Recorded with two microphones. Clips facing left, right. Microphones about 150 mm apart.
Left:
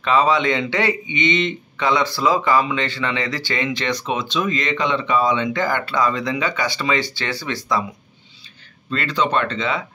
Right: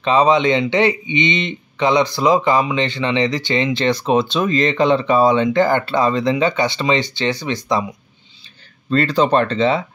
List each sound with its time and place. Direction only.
0.0 s a man's voice: 20° right (ahead or behind)
8.9 s speech: 35° right (ahead or behind)